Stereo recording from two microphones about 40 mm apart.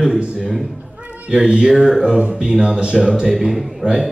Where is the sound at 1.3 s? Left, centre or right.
Right.